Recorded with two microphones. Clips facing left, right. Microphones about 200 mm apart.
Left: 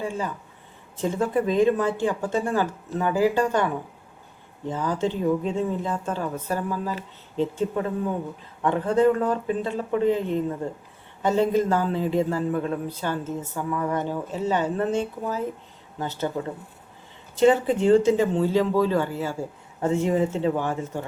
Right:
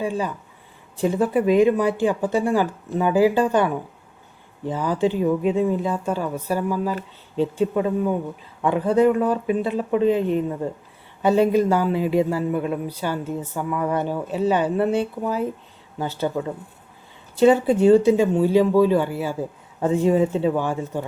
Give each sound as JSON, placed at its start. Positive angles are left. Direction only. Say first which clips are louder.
{"t": 0.0, "sound": "a man's voice", "louder": "right 4 dB", "side_deg": -15}
{"t": 4.7, "sound": "a man's voice", "louder": "right 4 dB", "side_deg": -15}
{"t": 8.6, "sound": "a man's voice", "louder": "right 2 dB", "side_deg": -15}
{"t": 17.4, "sound": "a man's voice", "louder": "right 4 dB", "side_deg": -15}